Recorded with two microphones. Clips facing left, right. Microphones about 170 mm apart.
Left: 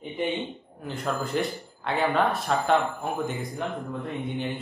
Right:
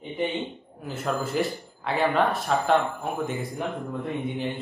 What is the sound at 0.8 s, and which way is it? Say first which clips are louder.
A woman's voice: right 1 dB; 5° right (ahead or behind).